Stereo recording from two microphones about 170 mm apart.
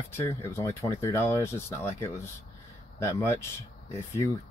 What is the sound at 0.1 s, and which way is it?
Speech, 15° left (ahead or behind).